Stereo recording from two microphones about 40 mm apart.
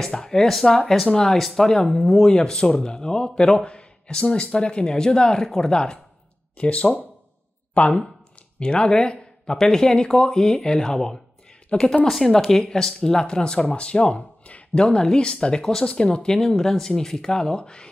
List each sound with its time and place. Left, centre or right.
0.1 s speech: centre
0.4 s speech: centre
6.6 s speech: left
8.5 s speech: left
12.1 s speech: centre; by 17.8 s left